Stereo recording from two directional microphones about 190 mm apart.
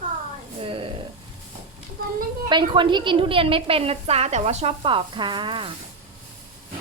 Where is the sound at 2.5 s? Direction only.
25° right (ahead or behind).